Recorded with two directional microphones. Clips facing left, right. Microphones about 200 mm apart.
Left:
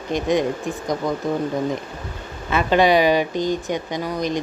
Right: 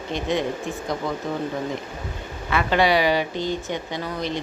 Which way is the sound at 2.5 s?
20° left (ahead or behind).